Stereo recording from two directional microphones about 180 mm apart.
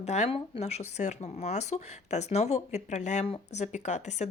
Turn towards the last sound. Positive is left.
turn(degrees=40)  # may be behind; listen again after turning